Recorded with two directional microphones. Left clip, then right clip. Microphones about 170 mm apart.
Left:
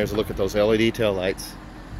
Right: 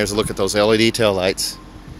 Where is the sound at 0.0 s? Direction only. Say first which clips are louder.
Right 4 dB; 40° right (ahead or behind).